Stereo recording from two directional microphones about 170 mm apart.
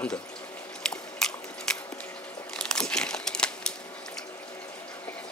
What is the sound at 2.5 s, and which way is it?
Crumpling, 5° left (ahead or behind).